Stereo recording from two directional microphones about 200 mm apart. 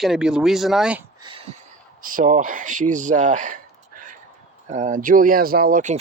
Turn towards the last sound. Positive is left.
turn(degrees=-40)  # may be behind; listen again after turning